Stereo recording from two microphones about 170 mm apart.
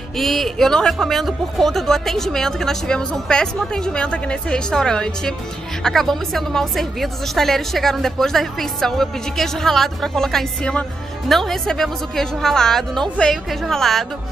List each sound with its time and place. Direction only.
0.2 s a woman's voice: centre (ahead or behind)